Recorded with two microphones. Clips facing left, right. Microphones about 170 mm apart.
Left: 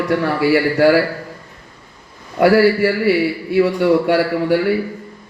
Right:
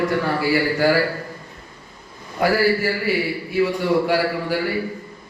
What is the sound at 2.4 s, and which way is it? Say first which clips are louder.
A man's voice: left 7 dB; 65° left (ahead or behind).